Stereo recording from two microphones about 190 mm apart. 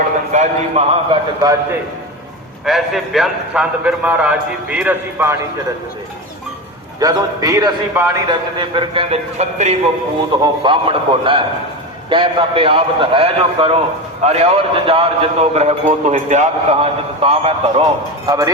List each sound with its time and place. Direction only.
0.3 s a man's voice: 35° right (ahead or behind)
2.6 s a man's voice: centre (ahead or behind)
7.0 s a man's voice: 20° right (ahead or behind)
8.3 s a man's voice: 25° right (ahead or behind)
18.3 s a man's voice: 20° right (ahead or behind)